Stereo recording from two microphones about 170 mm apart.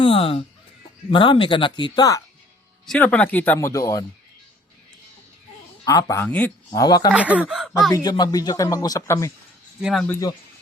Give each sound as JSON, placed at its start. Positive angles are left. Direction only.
{"t": 0.0, "sound": "speech", "side_deg": 35}
{"t": 2.8, "sound": "speech", "side_deg": 5}
{"t": 5.8, "sound": "speech", "side_deg": 20}
{"t": 6.2, "sound": "speech", "side_deg": 10}
{"t": 6.7, "sound": "speech", "side_deg": 25}
{"t": 7.1, "sound": "speech", "side_deg": -10}
{"t": 7.9, "sound": "speech", "side_deg": 25}
{"t": 9.8, "sound": "speech", "side_deg": 0}